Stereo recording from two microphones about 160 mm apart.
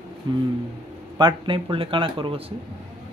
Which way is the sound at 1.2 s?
30° right (ahead or behind).